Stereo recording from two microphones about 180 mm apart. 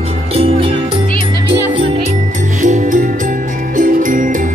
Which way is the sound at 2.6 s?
45° right (ahead or behind).